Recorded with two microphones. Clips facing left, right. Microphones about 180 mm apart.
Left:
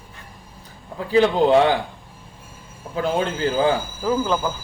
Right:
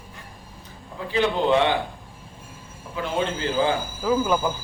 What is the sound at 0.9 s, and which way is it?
Speech, 40° left (ahead or behind).